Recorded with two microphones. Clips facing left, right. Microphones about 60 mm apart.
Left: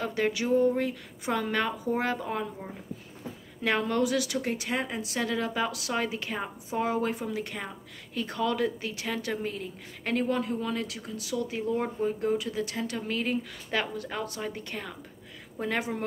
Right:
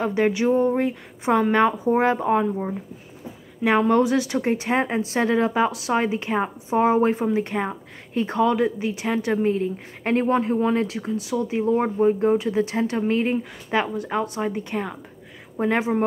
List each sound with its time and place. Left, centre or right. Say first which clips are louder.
0.0 s speech: right 8 dB; right